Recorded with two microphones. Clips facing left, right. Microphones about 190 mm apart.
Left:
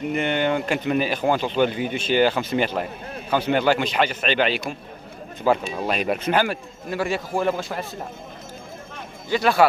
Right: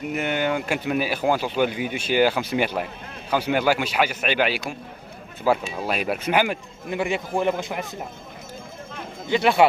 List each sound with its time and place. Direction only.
0.1 s speech: 5° right (ahead or behind)
9.3 s a man's voice: 20° right (ahead or behind)